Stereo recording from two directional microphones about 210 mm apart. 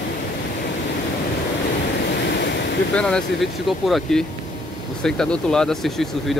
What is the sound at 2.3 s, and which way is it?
Waves, 50° left (ahead or behind).